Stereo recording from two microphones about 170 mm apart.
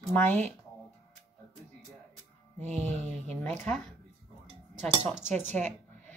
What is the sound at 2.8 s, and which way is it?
Music, 40° right (ahead or behind).